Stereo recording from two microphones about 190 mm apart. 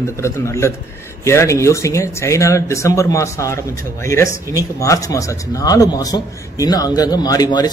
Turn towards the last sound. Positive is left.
turn(degrees=20)  # may be behind; listen again after turning